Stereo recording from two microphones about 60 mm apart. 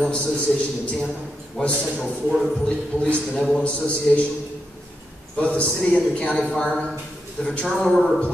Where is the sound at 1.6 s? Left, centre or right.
Centre.